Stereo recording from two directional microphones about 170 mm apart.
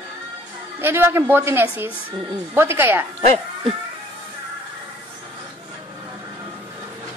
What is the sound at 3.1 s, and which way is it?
Speech, 35° right (ahead or behind).